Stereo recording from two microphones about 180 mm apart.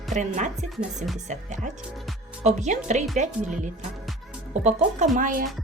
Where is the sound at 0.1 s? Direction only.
45° right (ahead or behind).